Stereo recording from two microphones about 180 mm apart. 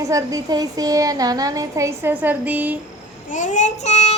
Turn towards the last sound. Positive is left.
turn(degrees=40)  # may be behind; listen again after turning